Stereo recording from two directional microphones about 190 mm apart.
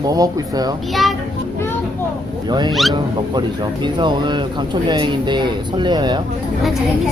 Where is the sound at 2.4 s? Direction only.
20° right (ahead or behind).